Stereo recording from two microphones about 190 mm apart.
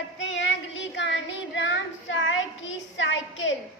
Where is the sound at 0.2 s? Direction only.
75° left (ahead or behind).